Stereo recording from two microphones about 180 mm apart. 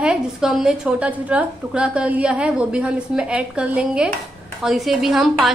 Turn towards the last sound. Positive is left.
turn(degrees=0)  # may be behind; listen again after turning